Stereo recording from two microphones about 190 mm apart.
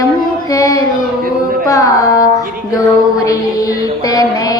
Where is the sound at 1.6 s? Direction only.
20° left (ahead or behind).